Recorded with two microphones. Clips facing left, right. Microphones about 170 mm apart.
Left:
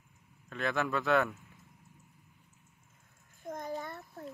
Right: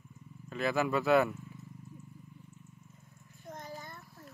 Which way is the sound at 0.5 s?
5° right (ahead or behind).